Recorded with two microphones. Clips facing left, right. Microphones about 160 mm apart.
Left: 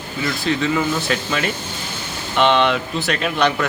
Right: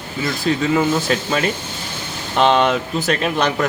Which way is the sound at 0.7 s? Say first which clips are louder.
Right 3 dB; 35° right (ahead or behind).